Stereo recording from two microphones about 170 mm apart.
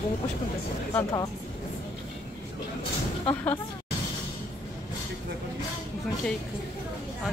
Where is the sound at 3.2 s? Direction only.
10° left (ahead or behind).